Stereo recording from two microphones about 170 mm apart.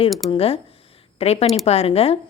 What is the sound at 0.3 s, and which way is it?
Speech, 35° left (ahead or behind).